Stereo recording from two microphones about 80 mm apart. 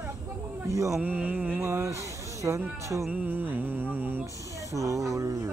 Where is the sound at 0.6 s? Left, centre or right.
Right.